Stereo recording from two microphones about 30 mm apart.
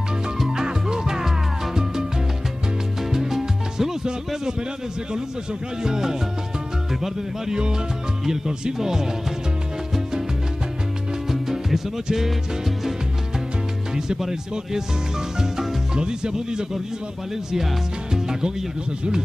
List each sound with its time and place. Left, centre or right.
0.7 s music: right
3.0 s salsa music: centre
5.8 s music: centre
8.3 s speech: centre
11.2 s music: centre
15.5 s speech: centre
18.1 s music: centre